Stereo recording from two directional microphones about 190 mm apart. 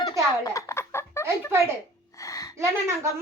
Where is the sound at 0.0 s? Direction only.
20° left (ahead or behind).